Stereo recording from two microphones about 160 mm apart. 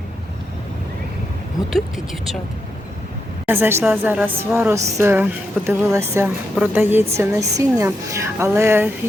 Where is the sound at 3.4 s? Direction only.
15° right (ahead or behind).